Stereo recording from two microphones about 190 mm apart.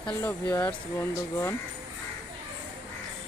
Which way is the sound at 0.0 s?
10° left (ahead or behind).